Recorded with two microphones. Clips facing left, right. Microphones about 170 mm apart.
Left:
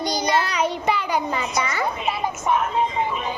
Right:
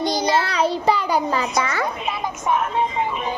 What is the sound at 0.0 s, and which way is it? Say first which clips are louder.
Child singing: right 2 dB; 25° right (ahead or behind).